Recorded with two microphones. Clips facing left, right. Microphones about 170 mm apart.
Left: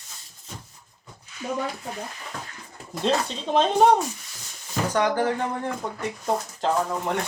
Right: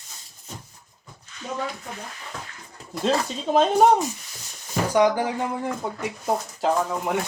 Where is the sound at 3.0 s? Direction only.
5° right (ahead or behind).